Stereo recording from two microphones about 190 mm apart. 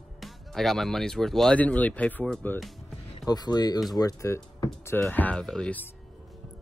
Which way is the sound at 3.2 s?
20° left (ahead or behind).